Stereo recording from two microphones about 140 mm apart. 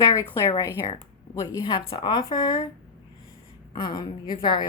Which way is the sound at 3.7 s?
35° left (ahead or behind).